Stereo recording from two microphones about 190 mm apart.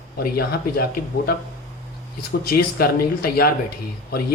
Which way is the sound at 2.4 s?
55° left (ahead or behind).